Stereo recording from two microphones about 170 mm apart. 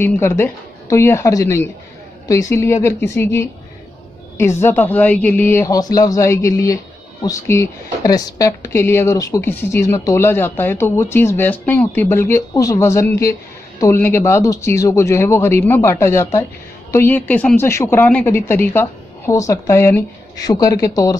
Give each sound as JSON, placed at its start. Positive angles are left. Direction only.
{"t": 0.0, "sound": "speech", "side_deg": 15}